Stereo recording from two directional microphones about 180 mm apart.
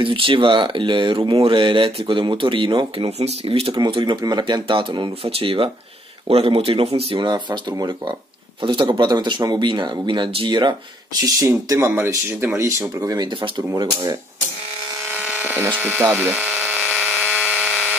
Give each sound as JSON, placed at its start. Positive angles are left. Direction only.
{"t": 0.0, "sound": "speech", "side_deg": -30}
{"t": 15.1, "sound": "a sound", "side_deg": -10}
{"t": 15.8, "sound": "electric toothbrush", "side_deg": -10}